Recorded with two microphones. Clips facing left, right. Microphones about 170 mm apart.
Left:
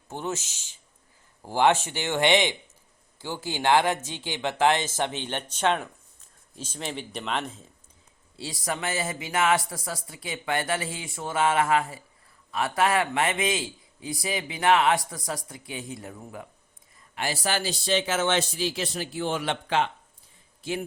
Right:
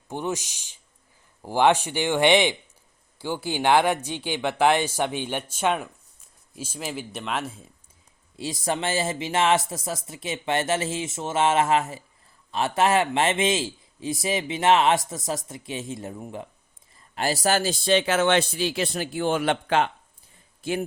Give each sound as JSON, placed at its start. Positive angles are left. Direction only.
{"t": 0.1, "sound": "speech", "side_deg": -15}
{"t": 8.4, "sound": "a man's voice", "side_deg": -20}
{"t": 17.2, "sound": "speech", "side_deg": -40}